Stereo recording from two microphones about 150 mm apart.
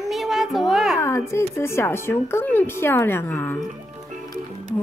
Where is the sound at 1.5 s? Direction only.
15° left (ahead or behind).